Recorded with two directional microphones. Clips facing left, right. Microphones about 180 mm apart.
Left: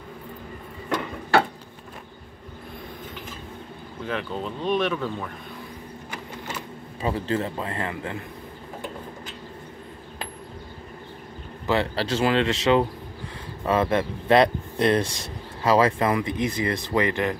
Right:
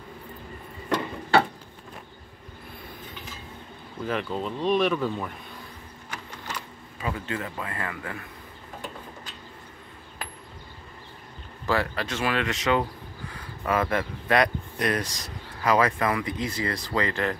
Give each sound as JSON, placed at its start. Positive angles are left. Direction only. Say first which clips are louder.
{"t": 4.0, "sound": "speech", "louder": "right 1 dB", "side_deg": 0}
{"t": 6.5, "sound": "speech", "louder": "left 3 dB", "side_deg": 30}
{"t": 11.6, "sound": "speech", "louder": "left 3 dB", "side_deg": 25}